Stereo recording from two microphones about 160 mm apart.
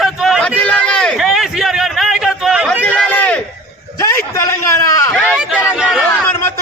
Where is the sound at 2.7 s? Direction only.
10° left (ahead or behind).